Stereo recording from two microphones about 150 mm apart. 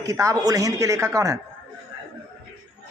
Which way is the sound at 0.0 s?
20° right (ahead or behind).